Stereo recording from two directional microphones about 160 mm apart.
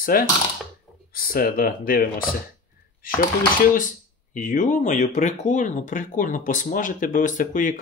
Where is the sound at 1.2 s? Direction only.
65° left (ahead or behind).